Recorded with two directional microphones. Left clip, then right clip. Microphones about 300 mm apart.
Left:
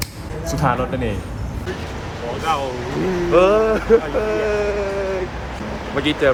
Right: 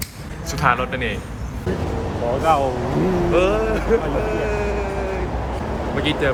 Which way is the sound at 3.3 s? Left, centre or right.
Centre.